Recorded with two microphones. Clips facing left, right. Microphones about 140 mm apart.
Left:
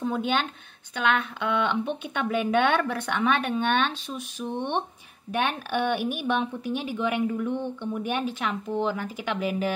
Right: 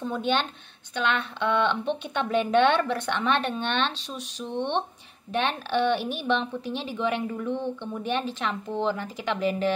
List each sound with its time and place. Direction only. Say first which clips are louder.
0.0 s a woman's voice: even; 5° left (ahead or behind)